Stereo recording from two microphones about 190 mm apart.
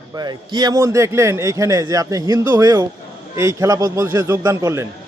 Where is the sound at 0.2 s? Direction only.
20° right (ahead or behind).